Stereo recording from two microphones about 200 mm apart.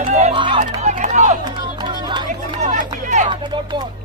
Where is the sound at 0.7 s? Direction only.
35° right (ahead or behind).